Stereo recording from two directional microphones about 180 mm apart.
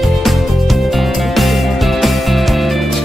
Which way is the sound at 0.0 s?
Centre (ahead or behind).